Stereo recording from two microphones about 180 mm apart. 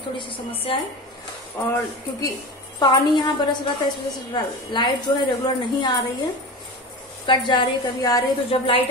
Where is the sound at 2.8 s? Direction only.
25° left (ahead or behind).